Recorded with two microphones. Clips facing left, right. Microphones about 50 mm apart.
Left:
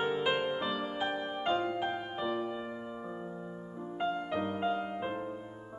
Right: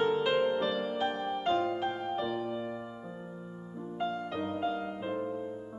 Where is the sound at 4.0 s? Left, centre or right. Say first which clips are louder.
Left 1 dB; centre.